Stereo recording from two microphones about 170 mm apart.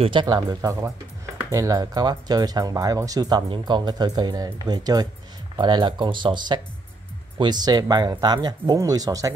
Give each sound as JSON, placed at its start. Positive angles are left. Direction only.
{"t": 0.0, "sound": "speech", "side_deg": -30}